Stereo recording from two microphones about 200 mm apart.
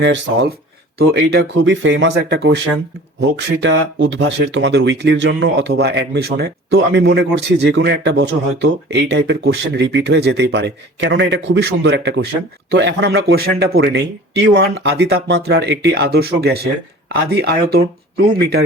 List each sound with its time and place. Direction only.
0.0 s speech: 65° right (ahead or behind)